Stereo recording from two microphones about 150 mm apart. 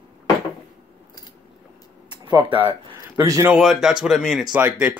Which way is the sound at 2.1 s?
30° right (ahead or behind).